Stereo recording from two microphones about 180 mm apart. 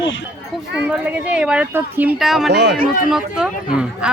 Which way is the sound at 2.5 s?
65° right (ahead or behind).